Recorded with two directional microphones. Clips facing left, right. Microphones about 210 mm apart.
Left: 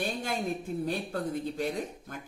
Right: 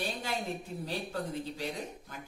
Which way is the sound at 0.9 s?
50° left (ahead or behind).